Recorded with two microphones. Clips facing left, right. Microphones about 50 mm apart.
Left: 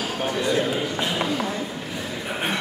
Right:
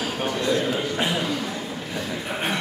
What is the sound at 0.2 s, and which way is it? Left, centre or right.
Speech, centre.